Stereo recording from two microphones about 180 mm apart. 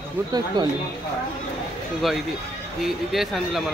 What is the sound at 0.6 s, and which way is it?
Speech, 25° right (ahead or behind).